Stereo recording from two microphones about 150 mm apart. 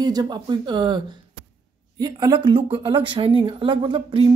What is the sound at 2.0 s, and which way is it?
Speech, 30° right (ahead or behind).